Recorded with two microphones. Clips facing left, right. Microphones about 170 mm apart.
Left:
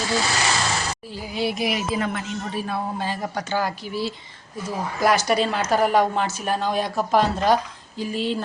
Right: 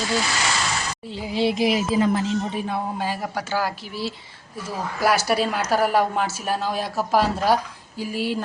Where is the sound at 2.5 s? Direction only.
15° right (ahead or behind).